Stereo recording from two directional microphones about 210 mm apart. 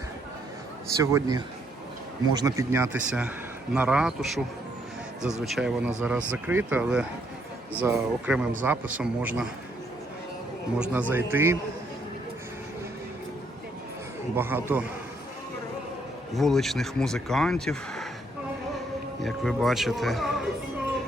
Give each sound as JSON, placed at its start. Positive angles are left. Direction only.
{"t": 1.1, "sound": "a man's voice", "side_deg": -15}
{"t": 5.5, "sound": "a man's voice", "side_deg": -5}
{"t": 10.8, "sound": "a man's voice", "side_deg": -5}
{"t": 14.3, "sound": "a man's voice", "side_deg": -10}
{"t": 16.3, "sound": "speech", "side_deg": 0}
{"t": 19.2, "sound": "speech", "side_deg": 0}